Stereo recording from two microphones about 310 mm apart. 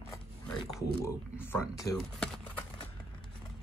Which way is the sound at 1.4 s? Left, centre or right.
Centre.